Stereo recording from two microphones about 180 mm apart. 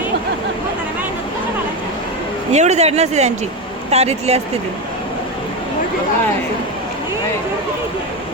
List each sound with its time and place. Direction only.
2.5 s speech: 40° right (ahead or behind)